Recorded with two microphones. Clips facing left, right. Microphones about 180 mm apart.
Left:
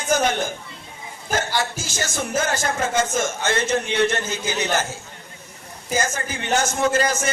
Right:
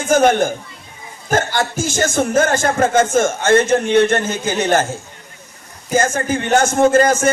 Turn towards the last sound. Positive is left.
turn(degrees=-50)  # may be behind; listen again after turning